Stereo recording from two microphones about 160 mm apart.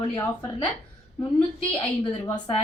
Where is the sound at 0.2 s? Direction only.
20° left (ahead or behind).